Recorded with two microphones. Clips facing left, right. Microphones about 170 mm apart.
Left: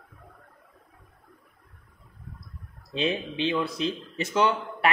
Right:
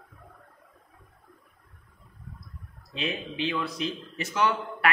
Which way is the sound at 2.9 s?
25° left (ahead or behind).